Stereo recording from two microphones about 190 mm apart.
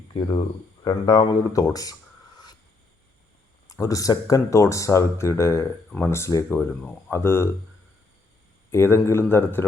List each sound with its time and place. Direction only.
0.1 s speech: 25° left (ahead or behind)
3.7 s speech: 20° left (ahead or behind)
8.7 s speech: 15° left (ahead or behind)